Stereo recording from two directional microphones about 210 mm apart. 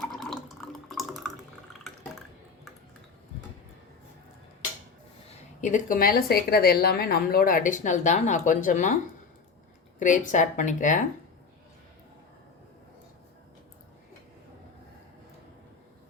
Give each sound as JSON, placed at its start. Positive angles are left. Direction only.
{"t": 0.1, "sound": "water", "side_deg": 0}
{"t": 5.5, "sound": "a woman's voice", "side_deg": 35}
{"t": 10.0, "sound": "a woman's voice", "side_deg": 35}